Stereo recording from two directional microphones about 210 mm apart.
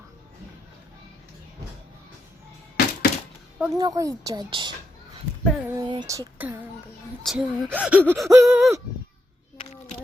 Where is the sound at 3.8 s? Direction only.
15° right (ahead or behind).